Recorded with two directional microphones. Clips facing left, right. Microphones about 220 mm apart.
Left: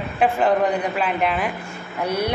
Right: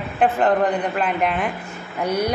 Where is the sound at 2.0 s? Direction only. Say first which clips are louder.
Right 1 dB; 30° left (ahead or behind).